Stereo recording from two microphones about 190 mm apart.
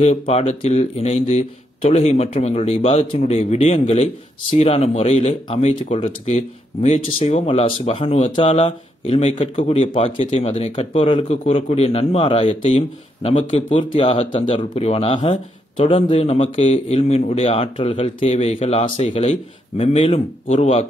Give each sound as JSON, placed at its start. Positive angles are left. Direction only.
{"t": 0.0, "sound": "speech", "side_deg": 35}